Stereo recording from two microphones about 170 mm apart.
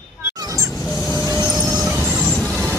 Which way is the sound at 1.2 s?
15° right (ahead or behind).